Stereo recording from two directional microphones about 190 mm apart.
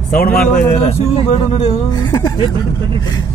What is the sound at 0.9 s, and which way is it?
A man's voice, 30° left (ahead or behind).